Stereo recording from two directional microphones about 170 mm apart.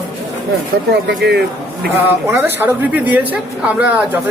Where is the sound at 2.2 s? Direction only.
15° right (ahead or behind).